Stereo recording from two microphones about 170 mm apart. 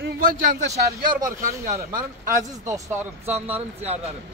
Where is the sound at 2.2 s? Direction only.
15° right (ahead or behind).